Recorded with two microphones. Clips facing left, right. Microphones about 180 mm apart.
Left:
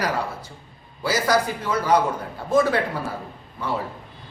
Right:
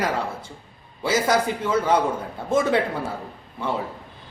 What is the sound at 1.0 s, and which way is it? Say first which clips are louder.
Speech: even; 25° right (ahead or behind).